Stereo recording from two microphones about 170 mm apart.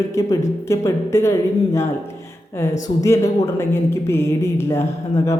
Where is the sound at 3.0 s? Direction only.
15° left (ahead or behind).